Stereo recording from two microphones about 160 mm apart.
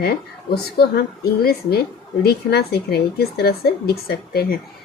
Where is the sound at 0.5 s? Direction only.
75° left (ahead or behind).